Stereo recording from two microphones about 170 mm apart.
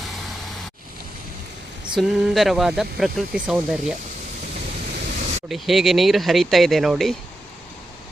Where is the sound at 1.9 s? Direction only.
Centre (ahead or behind).